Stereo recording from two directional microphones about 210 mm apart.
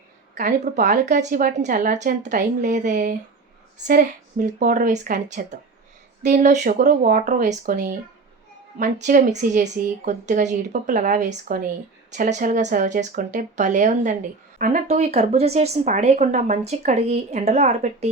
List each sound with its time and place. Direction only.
0.3 s speech: 40° right (ahead or behind)